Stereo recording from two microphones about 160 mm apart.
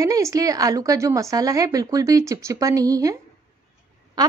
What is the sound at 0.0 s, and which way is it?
Speech, 20° right (ahead or behind).